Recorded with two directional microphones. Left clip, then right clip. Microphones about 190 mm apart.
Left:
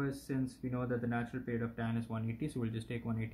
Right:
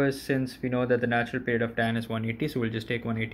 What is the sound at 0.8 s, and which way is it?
Speech, 15° right (ahead or behind).